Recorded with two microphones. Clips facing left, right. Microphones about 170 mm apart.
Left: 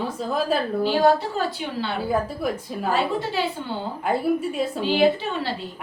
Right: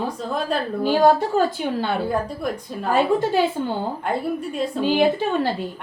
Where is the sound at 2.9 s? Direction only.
50° right (ahead or behind).